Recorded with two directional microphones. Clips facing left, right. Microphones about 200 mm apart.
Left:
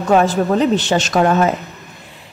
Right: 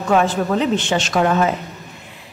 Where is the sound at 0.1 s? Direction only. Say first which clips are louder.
Left 3 dB; 40° left (ahead or behind).